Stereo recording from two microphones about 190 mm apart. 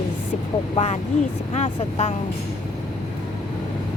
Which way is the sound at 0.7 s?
35° left (ahead or behind).